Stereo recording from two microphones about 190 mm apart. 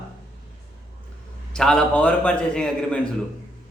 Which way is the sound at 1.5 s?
5° left (ahead or behind).